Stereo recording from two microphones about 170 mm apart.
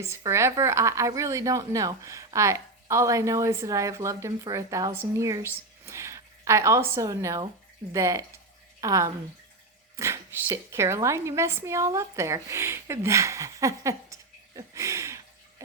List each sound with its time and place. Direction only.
0.0 s a woman's voice: 15° right (ahead or behind)